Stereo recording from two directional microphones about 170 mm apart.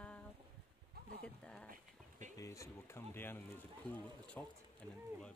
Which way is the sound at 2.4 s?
15° left (ahead or behind).